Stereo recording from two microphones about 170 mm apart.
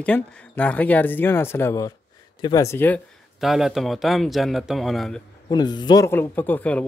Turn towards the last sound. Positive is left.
turn(degrees=10)  # may be behind; listen again after turning